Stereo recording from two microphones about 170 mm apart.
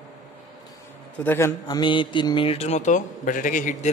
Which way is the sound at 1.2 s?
15° left (ahead or behind).